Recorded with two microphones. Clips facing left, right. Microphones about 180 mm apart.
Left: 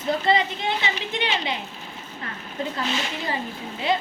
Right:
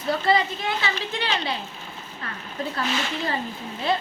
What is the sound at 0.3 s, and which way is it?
A woman's voice, 20° left (ahead or behind).